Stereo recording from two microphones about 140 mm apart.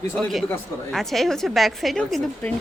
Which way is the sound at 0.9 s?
Centre (ahead or behind).